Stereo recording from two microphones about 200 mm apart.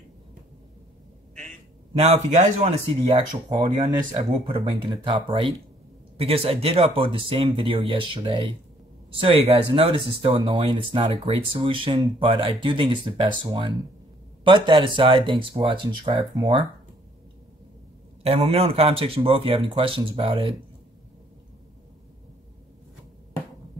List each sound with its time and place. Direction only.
2.0 s speech: 30° right (ahead or behind)
18.2 s speech: 30° right (ahead or behind)